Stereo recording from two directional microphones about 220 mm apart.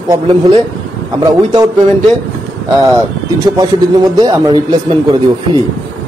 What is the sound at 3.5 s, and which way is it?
Speech, 15° right (ahead or behind).